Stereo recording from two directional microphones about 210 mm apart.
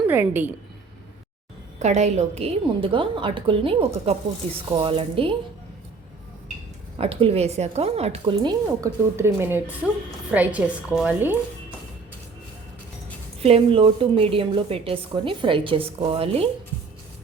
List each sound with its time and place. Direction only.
0.1 s a woman's voice: 10° right (ahead or behind)
1.8 s a woman's voice: 35° right (ahead or behind)
7.0 s a woman's voice: 25° right (ahead or behind); by 11.3 s 5° right (ahead or behind)
13.4 s a woman's voice: 25° right (ahead or behind)